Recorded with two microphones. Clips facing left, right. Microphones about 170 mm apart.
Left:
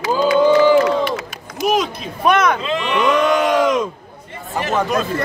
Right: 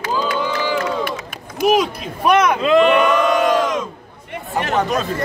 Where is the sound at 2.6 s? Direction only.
50° right (ahead or behind).